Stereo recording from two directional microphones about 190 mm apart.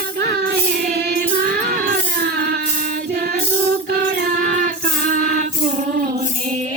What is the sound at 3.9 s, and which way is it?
Music, 45° right (ahead or behind).